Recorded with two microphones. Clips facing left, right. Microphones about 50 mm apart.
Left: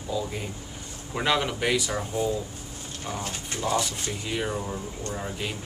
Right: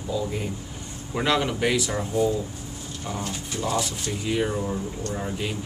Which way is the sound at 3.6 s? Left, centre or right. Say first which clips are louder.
Even; centre.